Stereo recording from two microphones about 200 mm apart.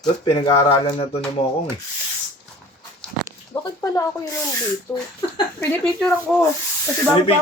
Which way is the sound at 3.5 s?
15° left (ahead or behind).